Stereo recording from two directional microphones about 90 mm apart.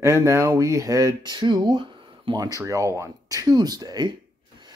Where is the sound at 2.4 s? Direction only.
40° right (ahead or behind).